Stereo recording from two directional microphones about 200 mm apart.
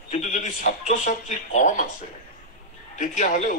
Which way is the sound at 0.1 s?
40° left (ahead or behind).